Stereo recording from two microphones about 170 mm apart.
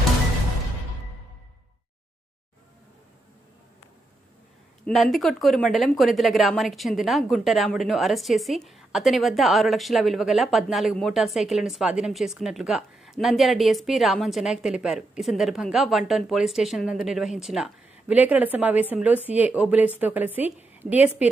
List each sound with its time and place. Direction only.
4.8 s speech: centre (ahead or behind)